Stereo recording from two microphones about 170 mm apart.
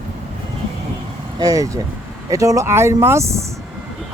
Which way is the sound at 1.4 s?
20° right (ahead or behind).